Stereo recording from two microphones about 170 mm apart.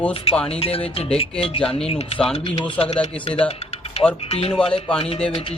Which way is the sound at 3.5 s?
40° left (ahead or behind).